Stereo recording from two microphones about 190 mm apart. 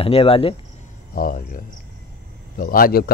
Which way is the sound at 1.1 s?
45° left (ahead or behind).